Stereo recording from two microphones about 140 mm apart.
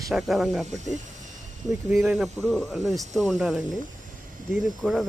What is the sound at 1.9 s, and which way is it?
Speech, centre (ahead or behind).